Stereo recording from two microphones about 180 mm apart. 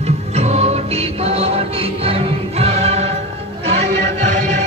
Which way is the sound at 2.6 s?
35° right (ahead or behind).